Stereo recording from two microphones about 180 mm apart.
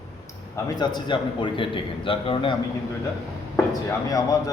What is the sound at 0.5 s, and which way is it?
A man's voice, 25° left (ahead or behind).